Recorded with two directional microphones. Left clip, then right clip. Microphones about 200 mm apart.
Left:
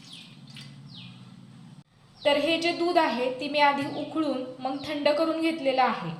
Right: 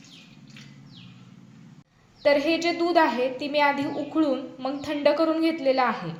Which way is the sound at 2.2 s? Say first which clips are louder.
Right 2 dB; 30° right (ahead or behind).